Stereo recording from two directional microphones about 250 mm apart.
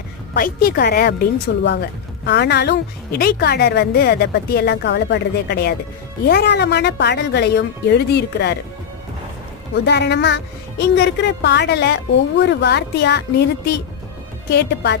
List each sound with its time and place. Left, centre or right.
0.3 s a woman's voice: left
9.7 s a woman's voice: left
14.5 s a woman's voice: left